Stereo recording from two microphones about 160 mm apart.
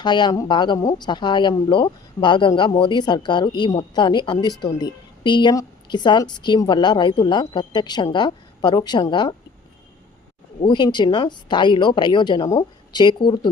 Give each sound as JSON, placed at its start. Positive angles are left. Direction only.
{"t": 0.0, "sound": "a woman's voice", "side_deg": 30}
{"t": 10.6, "sound": "a woman's voice", "side_deg": 30}